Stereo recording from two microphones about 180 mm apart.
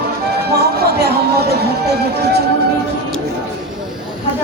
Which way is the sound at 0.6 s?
65° right (ahead or behind).